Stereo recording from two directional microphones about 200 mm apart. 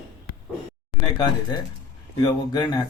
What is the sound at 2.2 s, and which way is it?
Speech, 20° left (ahead or behind).